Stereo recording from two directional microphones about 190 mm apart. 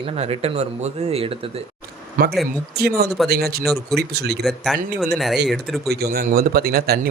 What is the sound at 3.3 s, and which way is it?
Speech, 55° right (ahead or behind).